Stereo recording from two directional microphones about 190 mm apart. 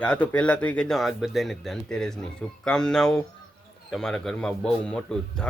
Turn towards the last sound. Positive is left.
turn(degrees=5)  # may be behind; listen again after turning